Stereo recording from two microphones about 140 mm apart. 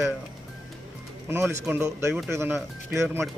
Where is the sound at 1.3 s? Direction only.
20° right (ahead or behind).